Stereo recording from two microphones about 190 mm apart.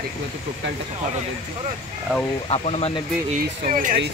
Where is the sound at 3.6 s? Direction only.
45° right (ahead or behind).